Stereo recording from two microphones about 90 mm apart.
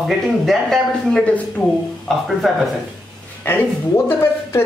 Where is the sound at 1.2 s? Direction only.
15° left (ahead or behind).